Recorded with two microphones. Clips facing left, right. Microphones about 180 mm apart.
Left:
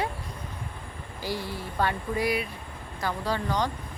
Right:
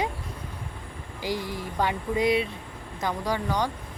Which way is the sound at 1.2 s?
15° right (ahead or behind).